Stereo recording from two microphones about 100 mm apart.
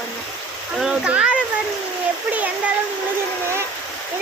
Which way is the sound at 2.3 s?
15° right (ahead or behind).